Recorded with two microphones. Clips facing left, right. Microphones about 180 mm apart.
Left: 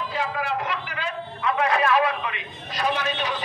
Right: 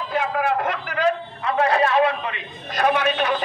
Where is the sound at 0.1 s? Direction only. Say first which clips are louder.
Right 7 dB; 55° right (ahead or behind); by 2.4 s 30° right (ahead or behind).